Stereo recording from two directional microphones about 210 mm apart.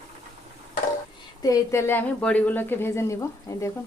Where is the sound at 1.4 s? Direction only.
15° left (ahead or behind).